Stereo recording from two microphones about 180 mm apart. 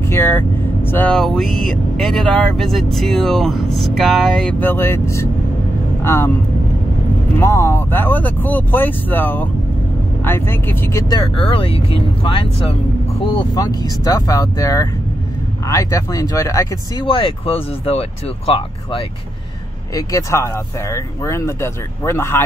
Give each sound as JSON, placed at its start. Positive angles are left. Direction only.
{"t": 0.1, "sound": "vehicle", "side_deg": 10}
{"t": 0.8, "sound": "speech", "side_deg": 10}
{"t": 7.3, "sound": "speech", "side_deg": 15}
{"t": 17.0, "sound": "speech", "side_deg": 30}
{"t": 19.9, "sound": "speech", "side_deg": 20}